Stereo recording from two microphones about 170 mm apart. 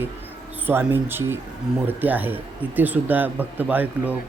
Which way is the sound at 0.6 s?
10° right (ahead or behind).